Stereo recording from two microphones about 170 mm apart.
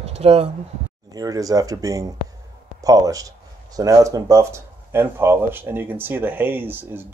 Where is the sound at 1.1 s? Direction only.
20° right (ahead or behind).